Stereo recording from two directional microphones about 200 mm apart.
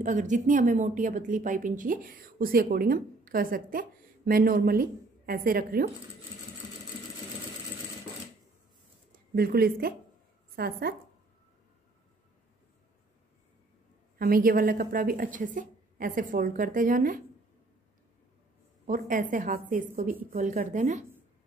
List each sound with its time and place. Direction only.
0.0 s a woman's voice: 40° right (ahead or behind)
9.3 s a woman's voice: 50° right (ahead or behind)
14.1 s a woman's voice: 45° right (ahead or behind)
18.9 s a woman's voice: 40° right (ahead or behind)